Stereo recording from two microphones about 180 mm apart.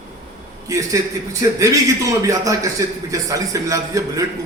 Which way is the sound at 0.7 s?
20° right (ahead or behind).